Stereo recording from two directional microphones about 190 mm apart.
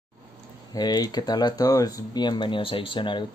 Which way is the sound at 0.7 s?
20° left (ahead or behind).